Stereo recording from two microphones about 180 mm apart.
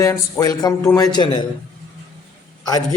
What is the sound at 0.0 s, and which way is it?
A man's voice, 20° left (ahead or behind).